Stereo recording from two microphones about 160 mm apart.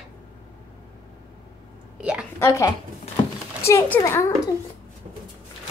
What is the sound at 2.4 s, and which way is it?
A child's voice, 15° left (ahead or behind).